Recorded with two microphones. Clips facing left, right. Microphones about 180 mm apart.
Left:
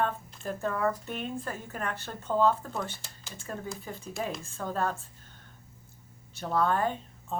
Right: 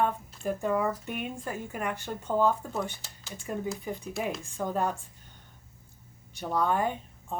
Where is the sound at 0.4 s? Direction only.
15° right (ahead or behind).